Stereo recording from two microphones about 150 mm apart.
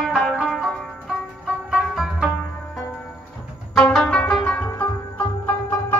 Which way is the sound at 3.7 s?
5° left (ahead or behind).